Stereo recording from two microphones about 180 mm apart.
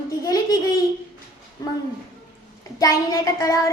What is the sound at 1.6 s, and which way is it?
Speech, 20° left (ahead or behind).